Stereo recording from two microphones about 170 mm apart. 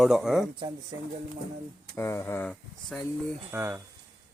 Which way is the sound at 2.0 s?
15° left (ahead or behind).